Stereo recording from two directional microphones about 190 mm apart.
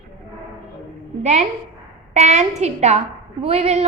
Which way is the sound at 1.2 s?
35° right (ahead or behind).